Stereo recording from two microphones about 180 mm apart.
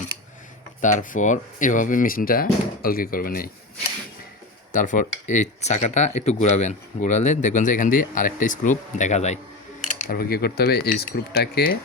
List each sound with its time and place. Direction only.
0.8 s speech: 45° left (ahead or behind)
4.7 s speech: 45° left (ahead or behind)
10.0 s speech: 55° left (ahead or behind)